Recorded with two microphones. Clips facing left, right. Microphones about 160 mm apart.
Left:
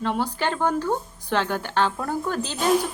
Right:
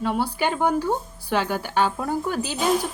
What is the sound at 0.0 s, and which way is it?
Speech, 10° right (ahead or behind).